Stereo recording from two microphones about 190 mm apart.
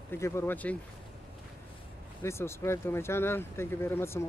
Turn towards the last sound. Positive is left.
turn(degrees=15)  # may be behind; listen again after turning